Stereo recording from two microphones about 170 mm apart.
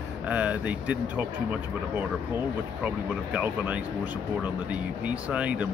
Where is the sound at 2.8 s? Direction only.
10° right (ahead or behind).